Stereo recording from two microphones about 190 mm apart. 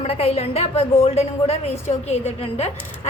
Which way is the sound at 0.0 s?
30° left (ahead or behind).